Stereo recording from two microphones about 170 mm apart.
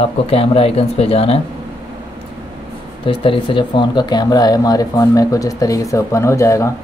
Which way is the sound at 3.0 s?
30° left (ahead or behind).